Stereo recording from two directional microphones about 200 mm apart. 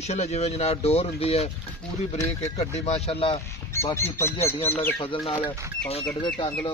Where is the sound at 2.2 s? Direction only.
15° left (ahead or behind).